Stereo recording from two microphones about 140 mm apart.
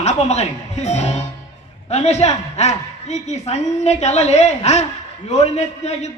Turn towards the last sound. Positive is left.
turn(degrees=50)  # may be behind; listen again after turning